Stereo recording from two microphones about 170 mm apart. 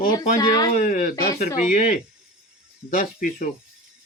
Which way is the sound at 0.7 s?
50° left (ahead or behind).